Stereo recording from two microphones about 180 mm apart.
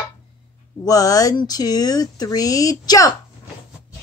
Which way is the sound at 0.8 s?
20° left (ahead or behind).